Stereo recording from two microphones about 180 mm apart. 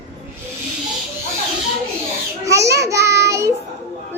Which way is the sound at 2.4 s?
15° right (ahead or behind).